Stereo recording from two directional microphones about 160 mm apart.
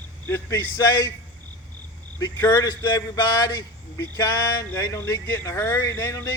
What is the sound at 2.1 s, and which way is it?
Speech, 20° left (ahead or behind).